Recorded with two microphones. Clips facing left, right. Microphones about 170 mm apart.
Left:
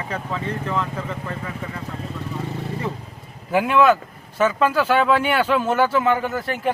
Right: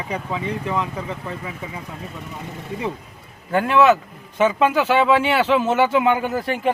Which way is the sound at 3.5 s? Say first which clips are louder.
Right 1 dB; centre (ahead or behind).